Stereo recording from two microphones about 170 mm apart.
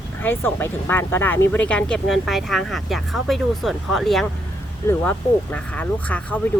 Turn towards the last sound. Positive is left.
turn(degrees=10)  # may be behind; listen again after turning